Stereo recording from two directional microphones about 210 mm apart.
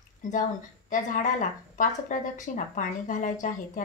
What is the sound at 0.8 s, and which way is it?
A woman's voice, 40° left (ahead or behind).